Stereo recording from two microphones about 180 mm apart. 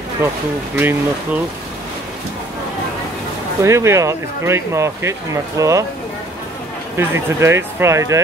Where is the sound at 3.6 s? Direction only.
15° right (ahead or behind).